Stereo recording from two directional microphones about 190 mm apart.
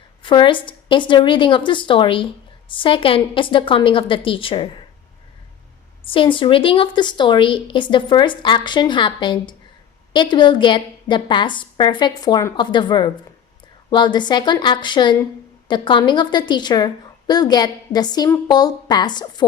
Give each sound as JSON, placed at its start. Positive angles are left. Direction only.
{"t": 0.2, "sound": "a woman's voice", "side_deg": 25}
{"t": 6.1, "sound": "a woman's voice", "side_deg": 25}